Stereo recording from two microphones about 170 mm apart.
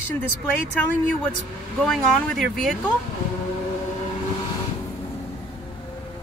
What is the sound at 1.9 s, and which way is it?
Speech, centre (ahead or behind).